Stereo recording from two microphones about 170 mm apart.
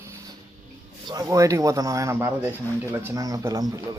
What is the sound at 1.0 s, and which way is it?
Speech, 20° right (ahead or behind).